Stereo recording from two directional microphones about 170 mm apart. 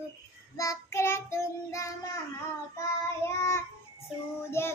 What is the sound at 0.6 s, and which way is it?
Child singing, 15° left (ahead or behind).